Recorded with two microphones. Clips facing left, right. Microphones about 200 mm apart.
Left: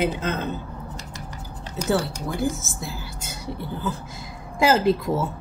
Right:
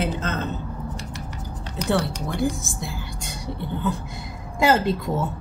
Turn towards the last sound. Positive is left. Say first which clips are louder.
# left 1 dB
turn(degrees=5)  # may be behind; listen again after turning